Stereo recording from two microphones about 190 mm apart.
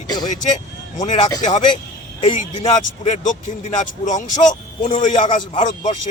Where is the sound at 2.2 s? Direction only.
40° left (ahead or behind).